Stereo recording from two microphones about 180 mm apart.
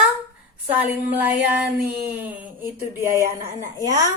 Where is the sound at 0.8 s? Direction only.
10° right (ahead or behind).